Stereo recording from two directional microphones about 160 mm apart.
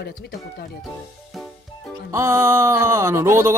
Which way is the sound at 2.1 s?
20° right (ahead or behind).